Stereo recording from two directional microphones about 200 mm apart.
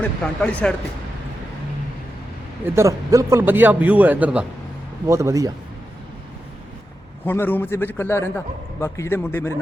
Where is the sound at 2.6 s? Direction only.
15° right (ahead or behind).